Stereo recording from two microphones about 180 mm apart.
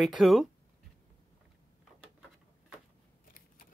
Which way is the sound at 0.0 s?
Centre (ahead or behind).